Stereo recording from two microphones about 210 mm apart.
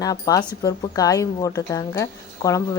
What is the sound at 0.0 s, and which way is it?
A woman's voice, 15° left (ahead or behind).